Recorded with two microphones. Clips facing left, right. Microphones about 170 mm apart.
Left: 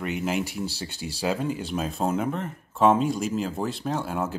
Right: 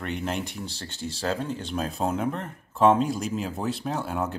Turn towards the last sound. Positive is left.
turn(degrees=0)  # may be behind; listen again after turning